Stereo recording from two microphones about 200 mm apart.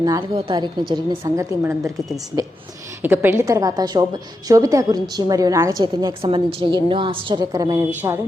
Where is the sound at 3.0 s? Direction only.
10° right (ahead or behind).